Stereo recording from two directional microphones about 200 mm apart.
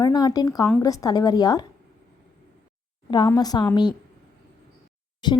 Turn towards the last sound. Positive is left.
turn(degrees=20)  # may be behind; listen again after turning